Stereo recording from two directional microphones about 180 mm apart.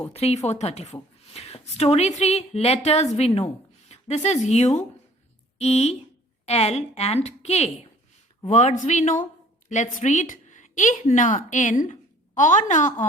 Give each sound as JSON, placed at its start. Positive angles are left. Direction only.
{"t": 0.1, "sound": "a woman's voice", "side_deg": 35}